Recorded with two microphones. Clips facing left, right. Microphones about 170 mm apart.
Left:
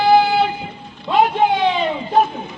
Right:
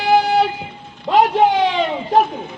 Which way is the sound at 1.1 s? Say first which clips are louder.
Right 2 dB; 90° right.